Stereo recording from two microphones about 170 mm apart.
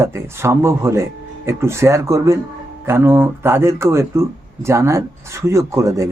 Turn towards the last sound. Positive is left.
turn(degrees=-20)  # may be behind; listen again after turning